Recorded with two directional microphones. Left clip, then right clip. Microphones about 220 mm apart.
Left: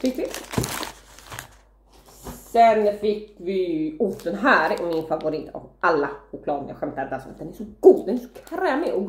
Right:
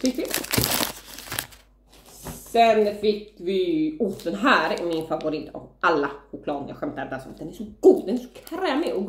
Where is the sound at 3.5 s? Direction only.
10° right (ahead or behind).